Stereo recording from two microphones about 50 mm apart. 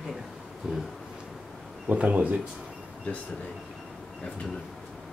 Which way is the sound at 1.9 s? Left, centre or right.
Right.